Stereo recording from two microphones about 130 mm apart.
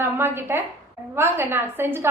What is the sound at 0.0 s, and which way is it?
A woman's voice, 20° right (ahead or behind).